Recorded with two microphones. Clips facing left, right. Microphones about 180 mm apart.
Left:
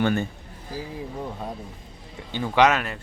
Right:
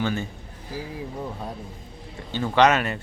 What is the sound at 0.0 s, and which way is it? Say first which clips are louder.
Speech: left 4 dB; 55° left (ahead or behind).